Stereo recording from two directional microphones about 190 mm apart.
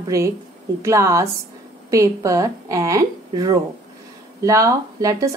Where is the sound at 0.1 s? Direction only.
15° right (ahead or behind).